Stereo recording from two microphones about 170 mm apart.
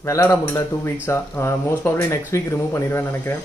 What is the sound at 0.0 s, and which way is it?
Speech, 15° left (ahead or behind).